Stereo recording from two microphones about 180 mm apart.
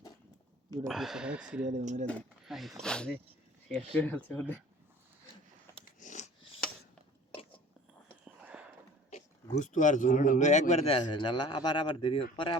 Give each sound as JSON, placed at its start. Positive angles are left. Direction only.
{"t": 0.9, "sound": "speech", "side_deg": 0}
{"t": 1.7, "sound": "speech", "side_deg": -45}
{"t": 2.0, "sound": "speech", "side_deg": 5}
{"t": 6.0, "sound": "a sound", "side_deg": 45}
{"t": 8.5, "sound": "a sound", "side_deg": -5}
{"t": 9.0, "sound": "speech", "side_deg": 40}